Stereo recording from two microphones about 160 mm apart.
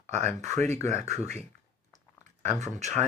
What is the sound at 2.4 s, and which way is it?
Speech, 45° right (ahead or behind).